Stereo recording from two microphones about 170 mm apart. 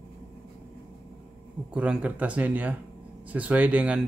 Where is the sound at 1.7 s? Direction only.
5° right (ahead or behind).